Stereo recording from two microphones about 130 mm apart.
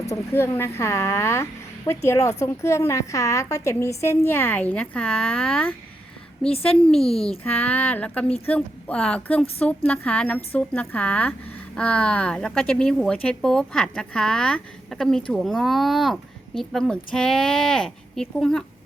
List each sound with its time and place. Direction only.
0.0 s a woman's voice: 25° left (ahead or behind)
6.8 s a woman's voice: 5° left (ahead or behind)